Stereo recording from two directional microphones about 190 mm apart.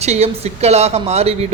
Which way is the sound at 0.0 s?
35° right (ahead or behind).